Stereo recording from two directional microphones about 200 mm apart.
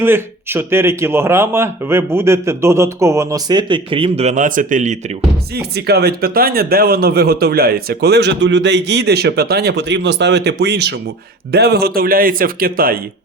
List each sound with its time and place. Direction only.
0.0 s speech: 10° right (ahead or behind); by 4.9 s 40° right (ahead or behind)
5.5 s a man's voice: 55° right (ahead or behind)